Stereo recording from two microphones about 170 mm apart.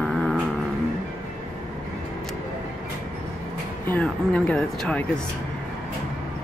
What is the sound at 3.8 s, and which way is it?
Speech, 10° left (ahead or behind).